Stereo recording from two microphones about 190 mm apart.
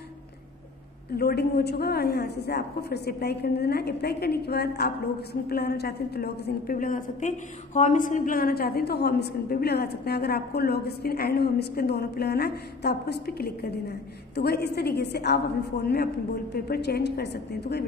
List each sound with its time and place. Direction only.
1.1 s a woman's voice: 55° left (ahead or behind)